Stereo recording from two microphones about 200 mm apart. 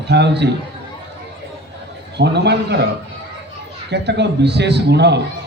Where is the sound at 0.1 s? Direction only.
60° right (ahead or behind).